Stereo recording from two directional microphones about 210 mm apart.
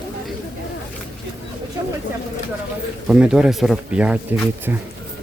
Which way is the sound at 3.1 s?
5° right (ahead or behind).